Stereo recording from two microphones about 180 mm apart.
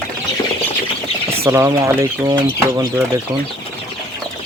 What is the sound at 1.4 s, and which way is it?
Speech, 15° right (ahead or behind).